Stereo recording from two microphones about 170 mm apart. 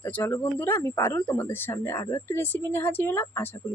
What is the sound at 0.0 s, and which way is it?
Speech, 10° left (ahead or behind).